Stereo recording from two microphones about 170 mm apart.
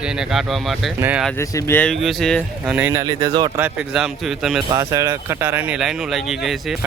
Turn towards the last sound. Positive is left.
turn(degrees=0)  # may be behind; listen again after turning